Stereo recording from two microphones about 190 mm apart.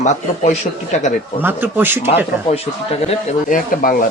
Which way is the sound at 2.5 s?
30° left (ahead or behind).